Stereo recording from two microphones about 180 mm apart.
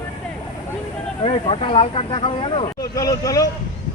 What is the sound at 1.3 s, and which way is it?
Speech, 30° left (ahead or behind).